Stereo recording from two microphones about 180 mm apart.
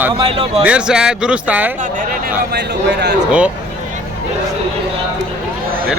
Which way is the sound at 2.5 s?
65° right (ahead or behind).